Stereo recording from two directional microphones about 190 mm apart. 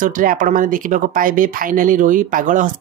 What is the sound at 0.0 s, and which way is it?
Speech, 45° right (ahead or behind).